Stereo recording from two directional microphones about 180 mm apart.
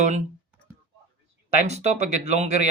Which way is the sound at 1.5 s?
40° right (ahead or behind).